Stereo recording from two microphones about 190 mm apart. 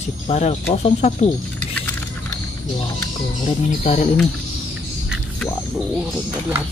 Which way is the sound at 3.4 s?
35° left (ahead or behind).